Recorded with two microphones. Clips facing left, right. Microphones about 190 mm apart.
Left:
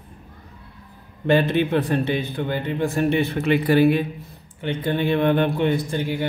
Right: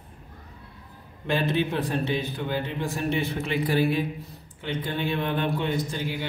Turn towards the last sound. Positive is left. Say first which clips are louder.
# left 6 dB
turn(degrees=60)  # may be behind; listen again after turning